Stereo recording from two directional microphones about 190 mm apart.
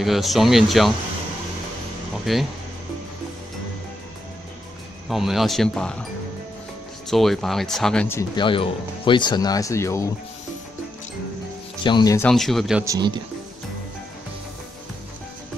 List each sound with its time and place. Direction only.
0.0 s speech: centre (ahead or behind)
2.3 s speech: centre (ahead or behind)
5.1 s speech: centre (ahead or behind)
7.1 s speech: centre (ahead or behind)
8.4 s speech: 25° left (ahead or behind)
11.8 s speech: 20° left (ahead or behind)
12.3 s speech: centre (ahead or behind)
12.8 s a man's voice: 20° right (ahead or behind)